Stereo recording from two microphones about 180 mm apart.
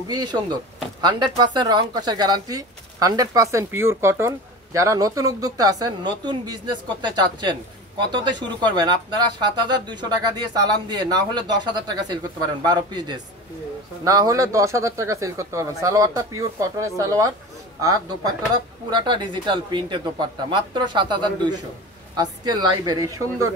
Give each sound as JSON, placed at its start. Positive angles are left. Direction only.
{"t": 0.1, "sound": "speech", "side_deg": -25}